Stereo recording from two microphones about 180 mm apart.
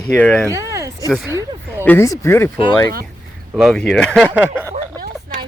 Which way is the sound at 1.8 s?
15° left (ahead or behind).